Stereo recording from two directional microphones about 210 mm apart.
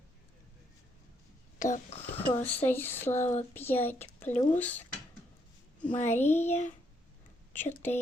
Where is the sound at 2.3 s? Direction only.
10° left (ahead or behind).